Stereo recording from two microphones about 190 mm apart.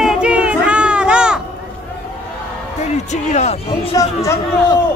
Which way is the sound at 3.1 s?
35° left (ahead or behind).